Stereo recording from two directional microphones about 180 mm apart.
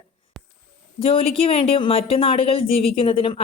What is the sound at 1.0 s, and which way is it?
A woman's voice, 30° left (ahead or behind).